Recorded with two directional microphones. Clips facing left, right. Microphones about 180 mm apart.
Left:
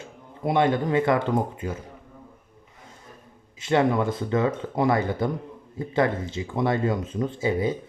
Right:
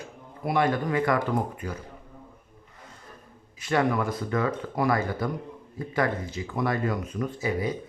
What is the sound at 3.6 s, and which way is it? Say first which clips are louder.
Speech: left 3 dB; 25° left (ahead or behind).